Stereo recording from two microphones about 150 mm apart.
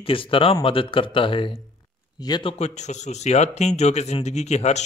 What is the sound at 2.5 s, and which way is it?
Speech, 50° left (ahead or behind).